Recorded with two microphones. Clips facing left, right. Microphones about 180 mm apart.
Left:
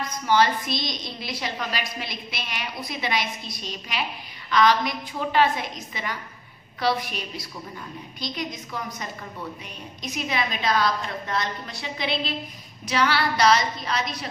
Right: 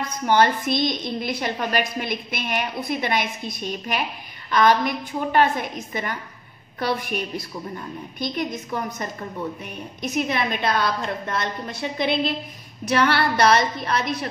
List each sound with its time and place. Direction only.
0.3 s a woman's voice: 55° right (ahead or behind)
10.1 s a woman's voice: 55° right (ahead or behind)